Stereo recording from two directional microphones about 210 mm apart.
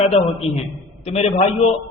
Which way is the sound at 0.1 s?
30° left (ahead or behind).